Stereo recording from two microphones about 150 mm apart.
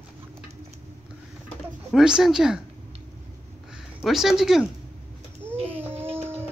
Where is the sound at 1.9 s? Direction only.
5° right (ahead or behind).